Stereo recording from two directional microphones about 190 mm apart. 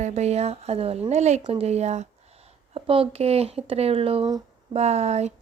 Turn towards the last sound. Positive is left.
turn(degrees=-35)  # may be behind; listen again after turning